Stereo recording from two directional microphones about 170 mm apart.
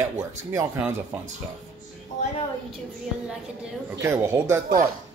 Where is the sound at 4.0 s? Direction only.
15° right (ahead or behind).